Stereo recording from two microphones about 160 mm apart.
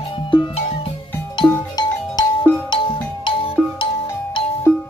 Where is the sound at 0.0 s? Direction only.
30° left (ahead or behind).